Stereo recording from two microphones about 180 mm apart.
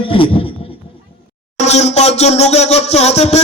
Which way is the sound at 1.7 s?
35° left (ahead or behind).